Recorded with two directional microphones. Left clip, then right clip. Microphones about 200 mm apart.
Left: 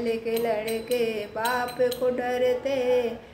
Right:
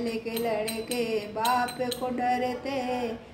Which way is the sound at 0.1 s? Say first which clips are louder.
Left 6 dB; 15° left (ahead or behind).